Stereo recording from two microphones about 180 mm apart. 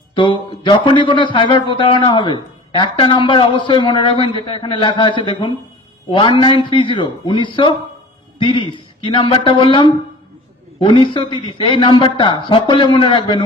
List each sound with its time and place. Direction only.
0.1 s speech: 30° left (ahead or behind)